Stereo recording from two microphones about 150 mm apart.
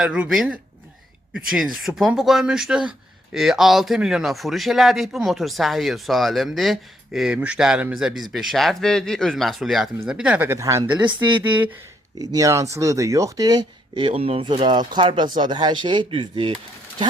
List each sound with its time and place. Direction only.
0.0 s a man's voice: 5° right (ahead or behind)
12.2 s speech: 25° right (ahead or behind)